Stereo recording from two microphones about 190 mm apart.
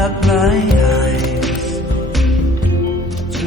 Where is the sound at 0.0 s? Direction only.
Centre (ahead or behind).